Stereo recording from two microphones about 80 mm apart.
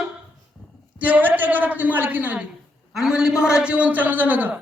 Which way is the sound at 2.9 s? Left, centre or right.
Centre.